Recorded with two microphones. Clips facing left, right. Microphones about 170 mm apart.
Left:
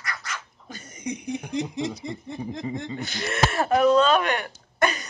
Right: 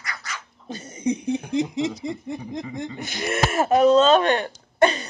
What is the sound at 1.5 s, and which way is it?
Speech, 20° right (ahead or behind).